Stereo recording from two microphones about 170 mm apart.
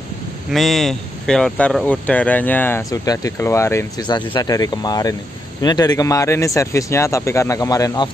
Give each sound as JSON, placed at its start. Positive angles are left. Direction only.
{"t": 0.5, "sound": "speech", "side_deg": 0}